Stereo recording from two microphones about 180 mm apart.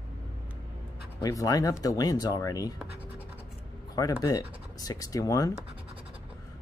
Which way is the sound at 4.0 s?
20° left (ahead or behind).